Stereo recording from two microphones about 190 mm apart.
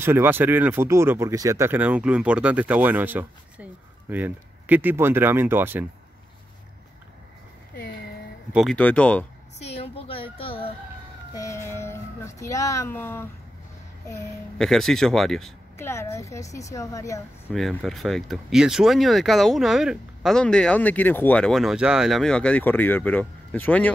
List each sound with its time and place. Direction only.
0.0 s speech: 10° right (ahead or behind)
8.5 s a woman's voice: 5° left (ahead or behind)
9.6 s a sound: 30° left (ahead or behind)
11.3 s cat: 15° left (ahead or behind)
14.6 s speech: centre (ahead or behind)
15.8 s a woman's voice: 15° left (ahead or behind)
17.5 s speech: centre (ahead or behind)